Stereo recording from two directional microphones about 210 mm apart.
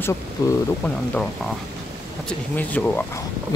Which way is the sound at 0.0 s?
10° left (ahead or behind).